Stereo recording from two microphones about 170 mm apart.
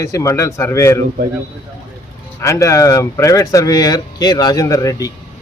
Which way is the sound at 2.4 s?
15° left (ahead or behind).